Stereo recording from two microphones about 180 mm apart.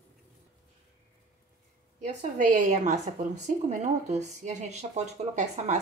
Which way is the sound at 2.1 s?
45° right (ahead or behind).